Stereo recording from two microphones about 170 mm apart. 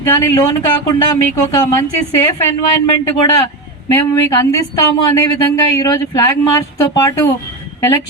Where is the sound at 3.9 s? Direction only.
20° left (ahead or behind).